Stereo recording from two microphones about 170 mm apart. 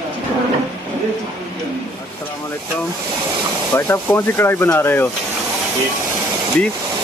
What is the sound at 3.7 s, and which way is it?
Speech, 15° left (ahead or behind).